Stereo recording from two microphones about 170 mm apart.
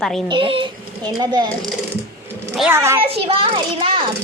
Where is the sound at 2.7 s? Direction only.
15° right (ahead or behind).